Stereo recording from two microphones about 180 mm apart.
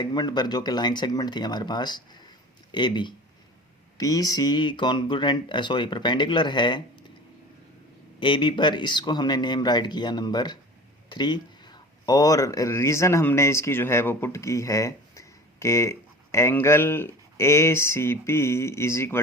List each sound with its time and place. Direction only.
0.0 s speech: 25° left (ahead or behind)
8.2 s speech: 25° left (ahead or behind)